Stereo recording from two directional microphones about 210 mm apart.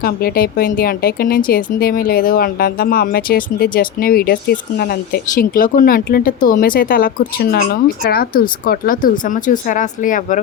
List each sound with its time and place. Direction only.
0.0 s speech: 45° left (ahead or behind)